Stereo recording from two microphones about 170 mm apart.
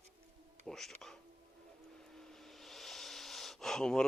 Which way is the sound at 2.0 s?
5° left (ahead or behind).